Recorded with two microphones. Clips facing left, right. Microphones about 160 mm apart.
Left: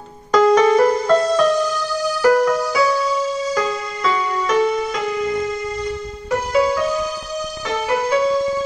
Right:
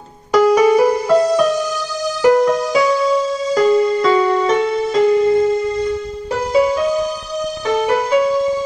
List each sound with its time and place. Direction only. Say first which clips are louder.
0.3 s music: right 2 dB; 10° right (ahead or behind); by 5.4 s 30° right (ahead or behind)
6.5 s music: right 3 dB; 20° right (ahead or behind)